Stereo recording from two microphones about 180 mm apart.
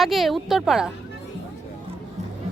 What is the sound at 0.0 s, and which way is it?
Speech, centre (ahead or behind).